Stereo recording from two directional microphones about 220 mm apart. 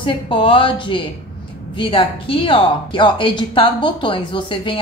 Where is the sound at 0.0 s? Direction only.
25° left (ahead or behind).